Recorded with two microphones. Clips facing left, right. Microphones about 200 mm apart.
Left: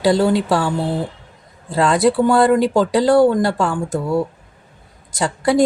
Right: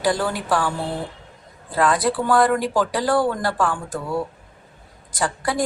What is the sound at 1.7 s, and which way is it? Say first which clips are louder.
A woman's voice: left 5 dB; 25° left (ahead or behind).